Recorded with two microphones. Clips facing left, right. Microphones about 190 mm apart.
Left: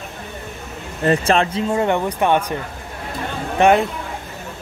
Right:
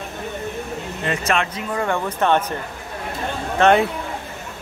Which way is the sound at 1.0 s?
35° left (ahead or behind).